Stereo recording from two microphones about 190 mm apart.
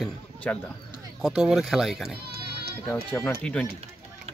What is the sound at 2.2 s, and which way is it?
Sheep, 55° right (ahead or behind).